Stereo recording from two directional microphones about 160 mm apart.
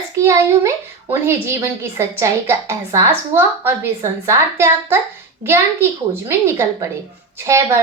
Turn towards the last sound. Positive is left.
turn(degrees=-20)  # may be behind; listen again after turning